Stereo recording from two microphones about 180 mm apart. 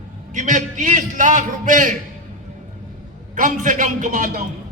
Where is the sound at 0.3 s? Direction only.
45° right (ahead or behind).